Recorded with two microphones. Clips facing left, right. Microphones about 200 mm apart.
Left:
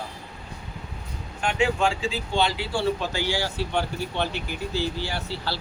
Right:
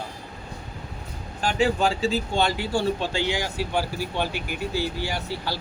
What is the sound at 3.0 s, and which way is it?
Speech, 20° right (ahead or behind).